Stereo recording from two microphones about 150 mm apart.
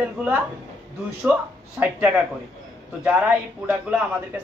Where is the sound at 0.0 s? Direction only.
10° right (ahead or behind).